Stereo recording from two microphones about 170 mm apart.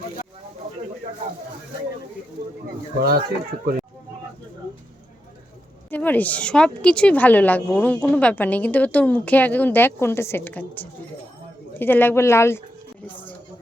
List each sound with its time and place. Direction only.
3.0 s speech: 65° right (ahead or behind)
5.9 s a woman's voice: 10° left (ahead or behind)